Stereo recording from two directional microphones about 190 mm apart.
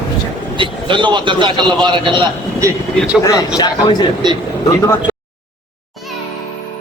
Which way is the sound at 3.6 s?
20° left (ahead or behind).